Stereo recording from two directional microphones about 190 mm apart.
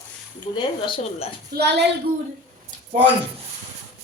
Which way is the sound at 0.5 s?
25° left (ahead or behind).